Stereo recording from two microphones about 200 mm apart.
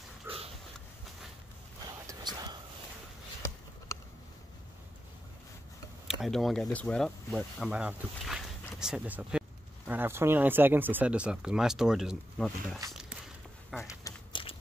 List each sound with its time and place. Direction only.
2.0 s whispering: 20° right (ahead or behind)
6.0 s speech: centre (ahead or behind)
13.8 s a sound: 15° left (ahead or behind)